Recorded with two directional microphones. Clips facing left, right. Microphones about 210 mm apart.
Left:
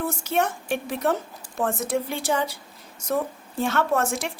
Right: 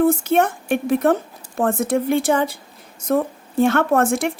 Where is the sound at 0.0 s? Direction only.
55° right (ahead or behind).